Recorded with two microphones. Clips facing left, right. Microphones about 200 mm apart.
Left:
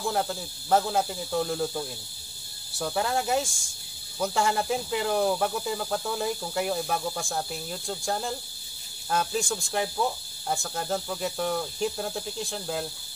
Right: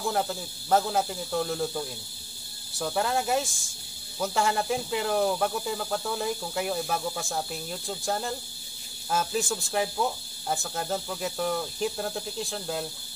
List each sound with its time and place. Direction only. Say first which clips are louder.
0.0 s speech: even; centre (ahead or behind)